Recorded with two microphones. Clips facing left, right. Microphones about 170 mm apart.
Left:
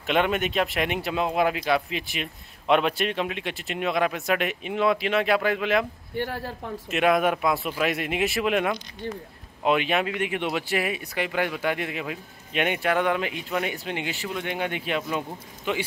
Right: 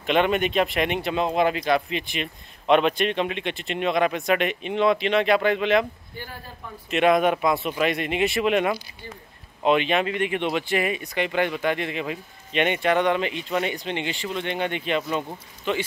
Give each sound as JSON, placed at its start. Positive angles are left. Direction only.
{"t": 0.0, "sound": "speech", "side_deg": 0}
{"t": 6.1, "sound": "speech", "side_deg": 75}
{"t": 6.9, "sound": "speech", "side_deg": 5}